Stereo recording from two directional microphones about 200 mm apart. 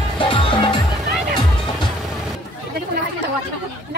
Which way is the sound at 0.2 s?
25° left (ahead or behind).